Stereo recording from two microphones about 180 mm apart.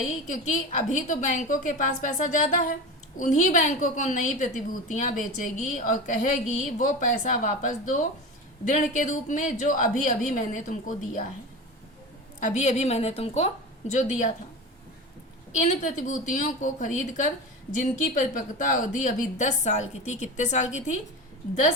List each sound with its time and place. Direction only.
0.3 s a woman's voice: 45° left (ahead or behind)
12.4 s a woman's voice: 40° left (ahead or behind)
15.5 s a woman's voice: 45° left (ahead or behind)